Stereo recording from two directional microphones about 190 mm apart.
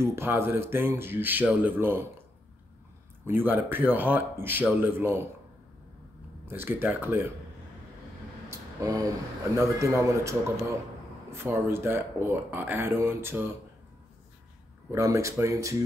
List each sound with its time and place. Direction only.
0.0 s speech: 15° right (ahead or behind)
3.3 s speech: 10° right (ahead or behind)
6.4 s speech: 10° right (ahead or behind)
8.5 s a sound: 20° right (ahead or behind)
9.6 s speech: 15° right (ahead or behind)
14.9 s speech: 15° right (ahead or behind)